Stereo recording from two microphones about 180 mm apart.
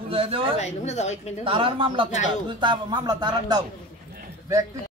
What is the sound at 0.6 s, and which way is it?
Speech, 40° left (ahead or behind).